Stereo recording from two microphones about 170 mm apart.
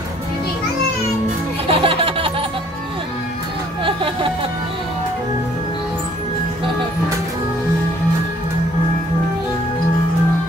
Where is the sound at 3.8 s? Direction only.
30° right (ahead or behind).